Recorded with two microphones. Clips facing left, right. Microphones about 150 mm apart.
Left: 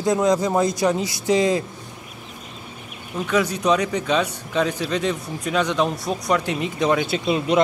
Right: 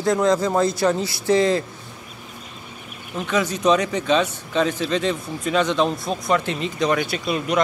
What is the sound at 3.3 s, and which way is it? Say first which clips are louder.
A man's voice: right 1 dB; 10° left (ahead or behind).